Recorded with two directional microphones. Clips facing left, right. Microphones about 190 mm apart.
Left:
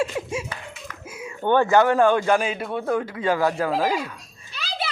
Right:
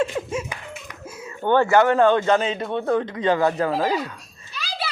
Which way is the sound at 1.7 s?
15° left (ahead or behind).